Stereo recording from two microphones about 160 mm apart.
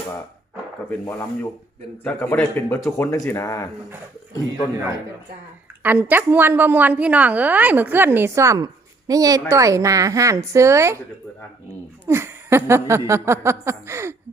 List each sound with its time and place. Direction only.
0.9 s speech: 15° left (ahead or behind)
5.8 s a woman's voice: 10° right (ahead or behind)
12.0 s a woman's voice: 15° right (ahead or behind)